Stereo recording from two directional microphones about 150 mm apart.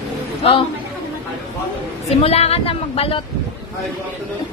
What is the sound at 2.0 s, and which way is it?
A woman's voice, 45° left (ahead or behind).